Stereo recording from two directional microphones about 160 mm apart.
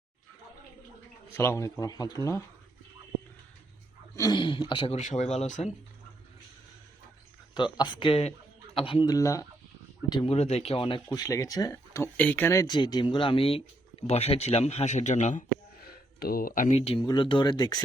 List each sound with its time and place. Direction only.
1.4 s speech: 20° left (ahead or behind)
4.1 s speech: 25° left (ahead or behind)
4.9 s speech: 45° left (ahead or behind)
7.5 s speech: 30° left (ahead or behind)
9.1 s speech: 20° left (ahead or behind)
10.1 s speech: 35° left (ahead or behind)
16.2 s speech: 65° left (ahead or behind); by 17.0 s 40° left (ahead or behind)
17.0 s speech: 25° left (ahead or behind)